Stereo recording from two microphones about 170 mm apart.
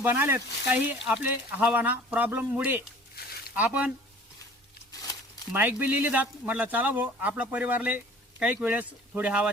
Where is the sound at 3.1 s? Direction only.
65° left (ahead or behind).